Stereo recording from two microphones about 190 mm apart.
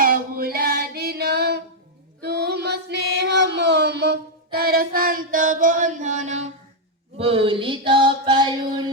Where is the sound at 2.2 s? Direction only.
60° right (ahead or behind); by 6.5 s 40° right (ahead or behind).